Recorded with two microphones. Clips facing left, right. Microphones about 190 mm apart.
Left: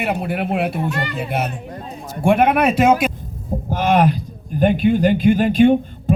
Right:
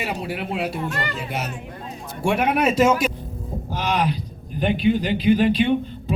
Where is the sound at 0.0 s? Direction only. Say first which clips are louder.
Left 6 dB; 55° left (ahead or behind).